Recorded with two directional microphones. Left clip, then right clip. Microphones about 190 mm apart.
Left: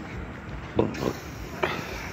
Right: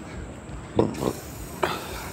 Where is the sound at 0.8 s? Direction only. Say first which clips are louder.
Right 2 dB; 25° right (ahead or behind).